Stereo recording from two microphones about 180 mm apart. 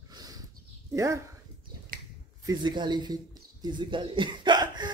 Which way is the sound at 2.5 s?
25° right (ahead or behind).